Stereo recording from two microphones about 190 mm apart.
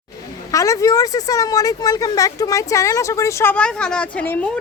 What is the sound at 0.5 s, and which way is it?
Speech, 15° left (ahead or behind).